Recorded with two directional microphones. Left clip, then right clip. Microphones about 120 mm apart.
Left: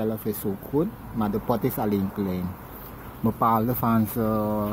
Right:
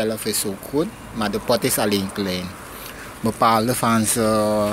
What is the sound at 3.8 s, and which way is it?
Speech, 25° right (ahead or behind).